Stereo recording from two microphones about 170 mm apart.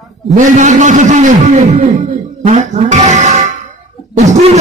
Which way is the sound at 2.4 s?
45° right (ahead or behind).